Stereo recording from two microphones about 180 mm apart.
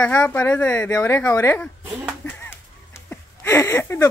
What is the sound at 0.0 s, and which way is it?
Speech, 10° left (ahead or behind).